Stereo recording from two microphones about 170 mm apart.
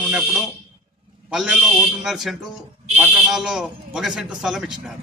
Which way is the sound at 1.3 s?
5° right (ahead or behind).